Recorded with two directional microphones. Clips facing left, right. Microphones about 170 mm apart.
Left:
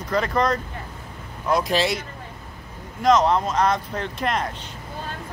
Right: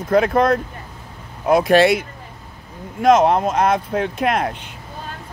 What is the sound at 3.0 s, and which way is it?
Speech, 55° right (ahead or behind).